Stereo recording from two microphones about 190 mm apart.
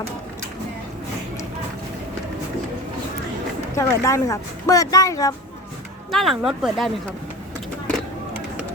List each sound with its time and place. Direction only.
3.8 s speech: 15° left (ahead or behind)
6.1 s speech: centre (ahead or behind)